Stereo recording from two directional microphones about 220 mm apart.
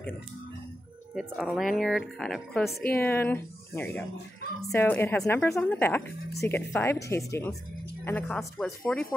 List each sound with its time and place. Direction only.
1.1 s speech: centre (ahead or behind)
2.6 s a woman's voice: 45° left (ahead or behind)
2.9 s speech: 10° left (ahead or behind)